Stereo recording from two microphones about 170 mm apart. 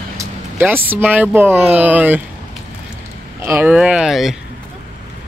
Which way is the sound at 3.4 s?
10° right (ahead or behind).